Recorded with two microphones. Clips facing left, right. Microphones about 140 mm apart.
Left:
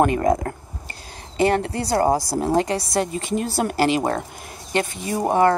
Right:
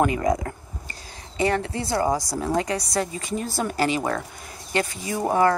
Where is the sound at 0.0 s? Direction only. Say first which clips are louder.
Left 3 dB; 45° left (ahead or behind).